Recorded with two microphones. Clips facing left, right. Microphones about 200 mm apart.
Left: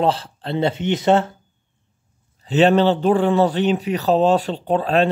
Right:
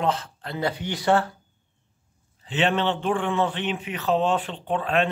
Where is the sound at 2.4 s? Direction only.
40° left (ahead or behind).